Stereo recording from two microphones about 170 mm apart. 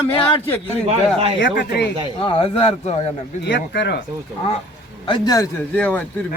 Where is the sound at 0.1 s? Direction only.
30° left (ahead or behind).